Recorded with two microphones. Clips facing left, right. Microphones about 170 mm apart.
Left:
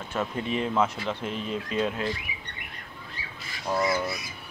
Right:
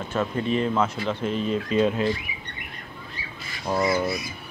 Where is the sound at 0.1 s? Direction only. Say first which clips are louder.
Right 4 dB; 10° left (ahead or behind).